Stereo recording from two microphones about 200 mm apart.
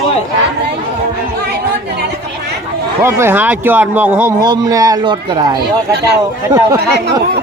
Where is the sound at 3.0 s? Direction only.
10° right (ahead or behind).